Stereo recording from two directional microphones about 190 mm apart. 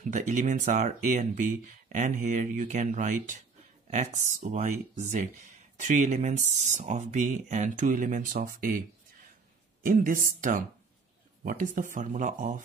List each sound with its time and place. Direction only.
0.0 s speech: 40° right (ahead or behind)
9.8 s speech: 45° right (ahead or behind)
11.4 s speech: 45° right (ahead or behind)